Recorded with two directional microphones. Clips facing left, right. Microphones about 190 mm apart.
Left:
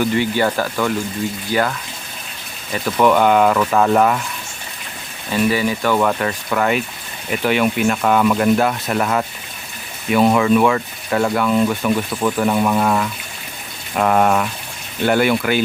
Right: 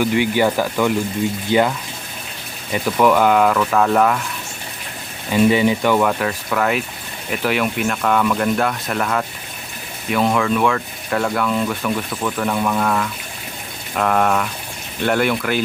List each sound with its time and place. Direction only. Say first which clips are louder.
0.0 s speech: right 1 dB; 10° right (ahead or behind)
2.7 s speech: even; 5° right (ahead or behind)
5.3 s speech: right 3 dB; 20° right (ahead or behind)
6.0 s speech: even; centre (ahead or behind)